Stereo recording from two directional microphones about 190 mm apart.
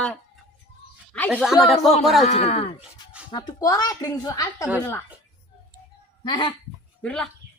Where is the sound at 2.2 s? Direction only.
35° left (ahead or behind).